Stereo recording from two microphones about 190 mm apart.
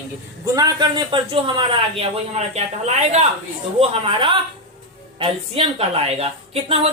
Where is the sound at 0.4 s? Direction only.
20° right (ahead or behind).